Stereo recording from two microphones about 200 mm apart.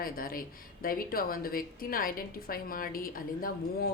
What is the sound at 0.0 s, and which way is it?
Speech, 45° left (ahead or behind).